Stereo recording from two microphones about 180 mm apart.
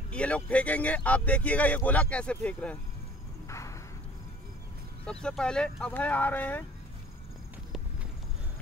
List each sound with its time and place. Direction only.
0.1 s speech: 5° left (ahead or behind)
3.4 s a sound: 15° left (ahead or behind)
5.2 s speech: 5° left (ahead or behind)